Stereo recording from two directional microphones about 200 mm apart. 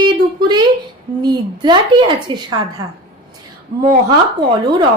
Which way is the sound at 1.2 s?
20° right (ahead or behind).